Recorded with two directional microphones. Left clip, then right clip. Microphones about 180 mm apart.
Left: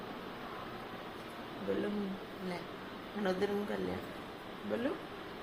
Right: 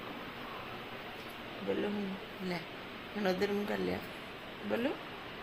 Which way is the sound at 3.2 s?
50° right (ahead or behind).